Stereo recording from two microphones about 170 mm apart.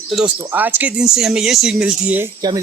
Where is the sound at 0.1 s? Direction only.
5° right (ahead or behind).